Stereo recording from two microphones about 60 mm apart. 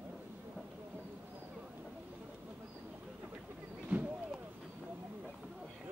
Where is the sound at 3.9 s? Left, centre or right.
Centre.